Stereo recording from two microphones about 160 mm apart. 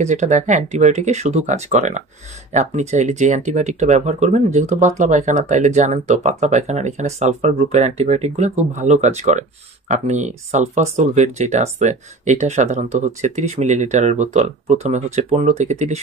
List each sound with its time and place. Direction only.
0.0 s speech: 45° right (ahead or behind)